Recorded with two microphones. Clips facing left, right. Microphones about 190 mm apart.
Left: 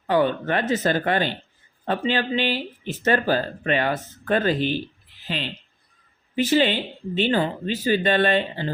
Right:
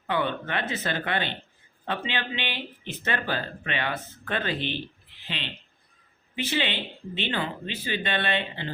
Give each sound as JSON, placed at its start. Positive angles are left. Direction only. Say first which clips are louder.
{"t": 0.1, "sound": "speech", "louder": "left 7 dB", "side_deg": 40}